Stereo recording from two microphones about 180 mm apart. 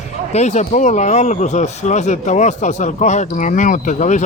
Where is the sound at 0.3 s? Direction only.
40° left (ahead or behind).